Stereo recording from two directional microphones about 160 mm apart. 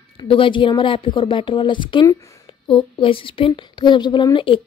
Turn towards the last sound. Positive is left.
turn(degrees=30)  # may be behind; listen again after turning